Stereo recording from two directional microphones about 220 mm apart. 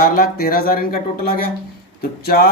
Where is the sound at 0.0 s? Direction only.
40° left (ahead or behind).